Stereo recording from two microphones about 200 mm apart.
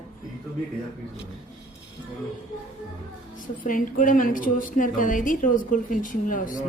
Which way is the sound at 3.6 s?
40° left (ahead or behind).